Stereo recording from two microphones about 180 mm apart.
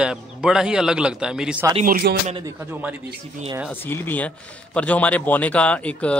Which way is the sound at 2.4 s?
10° right (ahead or behind).